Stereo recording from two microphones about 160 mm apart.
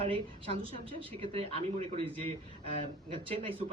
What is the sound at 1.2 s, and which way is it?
A man's voice, 35° right (ahead or behind).